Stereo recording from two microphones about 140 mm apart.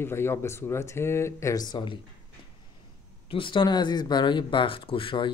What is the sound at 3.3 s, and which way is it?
Speech, 35° left (ahead or behind).